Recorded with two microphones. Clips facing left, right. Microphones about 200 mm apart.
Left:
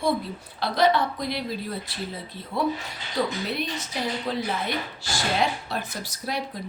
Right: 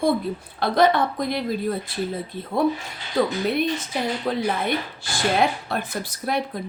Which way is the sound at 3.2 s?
55° right (ahead or behind).